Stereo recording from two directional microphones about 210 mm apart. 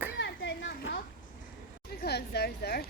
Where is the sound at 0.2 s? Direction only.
60° left (ahead or behind).